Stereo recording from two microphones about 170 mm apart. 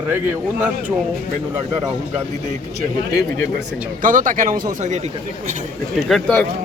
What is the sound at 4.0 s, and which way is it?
Speech, 50° right (ahead or behind).